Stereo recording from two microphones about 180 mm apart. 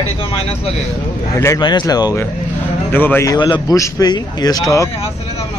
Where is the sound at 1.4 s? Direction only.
20° left (ahead or behind).